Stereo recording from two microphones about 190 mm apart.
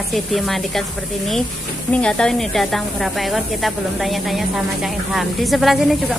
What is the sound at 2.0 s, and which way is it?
Speech, 5° left (ahead or behind).